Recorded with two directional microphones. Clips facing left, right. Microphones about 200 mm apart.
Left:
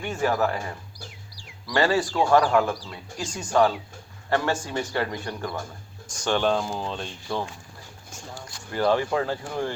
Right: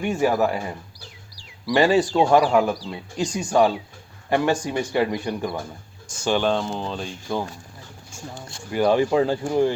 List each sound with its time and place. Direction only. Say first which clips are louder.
0.0 s speech: right 4 dB; 15° right (ahead or behind)
6.2 s speech: right 2 dB; centre (ahead or behind)
8.4 s speech: right 3 dB; 25° right (ahead or behind)
8.7 s speech: right 4 dB; 15° right (ahead or behind)